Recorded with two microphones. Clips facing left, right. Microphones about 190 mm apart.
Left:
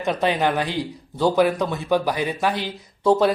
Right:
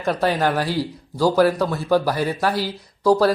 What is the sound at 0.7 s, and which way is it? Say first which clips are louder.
Speech: right 3 dB; 20° left (ahead or behind).